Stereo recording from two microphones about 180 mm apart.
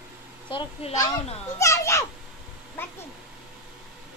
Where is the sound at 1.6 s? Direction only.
15° left (ahead or behind).